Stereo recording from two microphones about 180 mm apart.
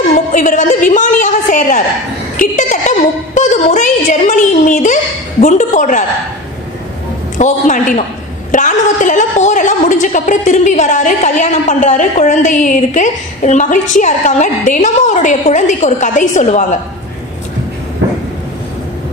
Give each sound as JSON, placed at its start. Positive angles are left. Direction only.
{"t": 0.3, "sound": "a sound", "side_deg": 45}
{"t": 5.4, "sound": "a woman's voice", "side_deg": 45}
{"t": 7.3, "sound": "a woman's voice", "side_deg": 45}